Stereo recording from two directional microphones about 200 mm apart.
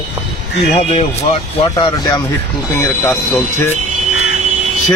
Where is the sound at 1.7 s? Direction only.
20° left (ahead or behind).